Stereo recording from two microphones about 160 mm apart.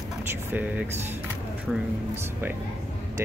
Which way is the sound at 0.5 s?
10° right (ahead or behind).